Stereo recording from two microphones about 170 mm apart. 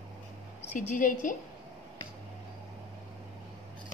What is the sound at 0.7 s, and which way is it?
Speech, 45° left (ahead or behind).